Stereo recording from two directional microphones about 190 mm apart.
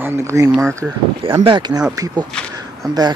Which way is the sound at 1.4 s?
25° right (ahead or behind).